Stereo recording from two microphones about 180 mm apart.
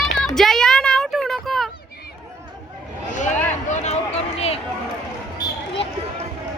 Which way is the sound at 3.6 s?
40° left (ahead or behind).